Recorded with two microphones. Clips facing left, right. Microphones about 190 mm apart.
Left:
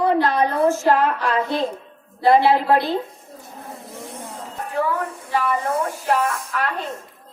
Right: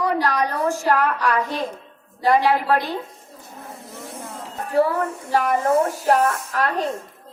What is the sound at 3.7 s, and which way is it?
Vehicle, centre (ahead or behind).